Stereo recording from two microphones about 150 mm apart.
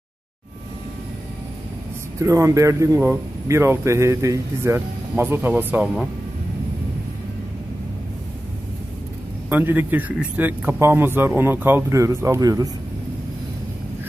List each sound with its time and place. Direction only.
2.1 s a man's voice: 20° right (ahead or behind)
9.5 s a man's voice: 15° right (ahead or behind)